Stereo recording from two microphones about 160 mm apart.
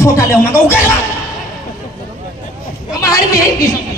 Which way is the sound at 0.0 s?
20° left (ahead or behind).